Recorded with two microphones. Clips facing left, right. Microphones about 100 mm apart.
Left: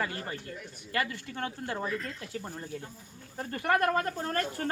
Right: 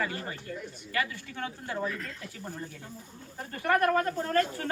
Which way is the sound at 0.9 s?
50° left (ahead or behind).